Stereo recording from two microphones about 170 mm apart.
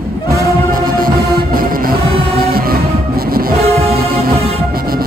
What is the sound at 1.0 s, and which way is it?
Music, 55° right (ahead or behind).